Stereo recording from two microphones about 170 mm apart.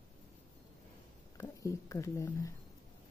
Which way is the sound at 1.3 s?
15° left (ahead or behind).